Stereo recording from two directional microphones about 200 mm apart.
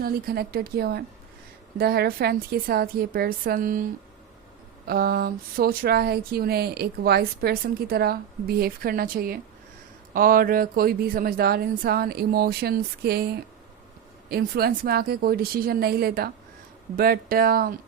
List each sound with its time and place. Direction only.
0.0 s speech: 50° right (ahead or behind)
4.9 s speech: 50° right (ahead or behind)